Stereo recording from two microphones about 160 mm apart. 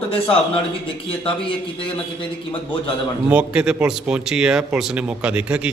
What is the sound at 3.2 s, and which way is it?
Speech, 10° right (ahead or behind).